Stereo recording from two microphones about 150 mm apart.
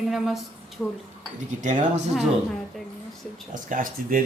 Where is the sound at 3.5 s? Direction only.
65° right (ahead or behind).